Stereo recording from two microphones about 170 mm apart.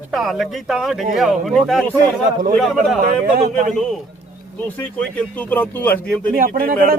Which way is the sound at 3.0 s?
55° right (ahead or behind).